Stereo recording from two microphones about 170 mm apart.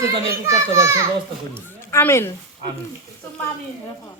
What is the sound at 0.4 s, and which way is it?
Speech, 15° right (ahead or behind).